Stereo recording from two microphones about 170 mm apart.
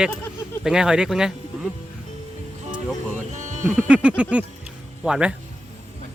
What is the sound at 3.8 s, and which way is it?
A man's voice, 5° right (ahead or behind).